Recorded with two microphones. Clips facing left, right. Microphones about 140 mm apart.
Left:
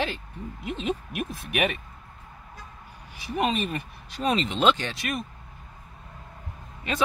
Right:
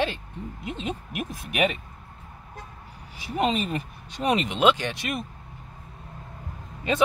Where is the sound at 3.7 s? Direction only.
20° right (ahead or behind).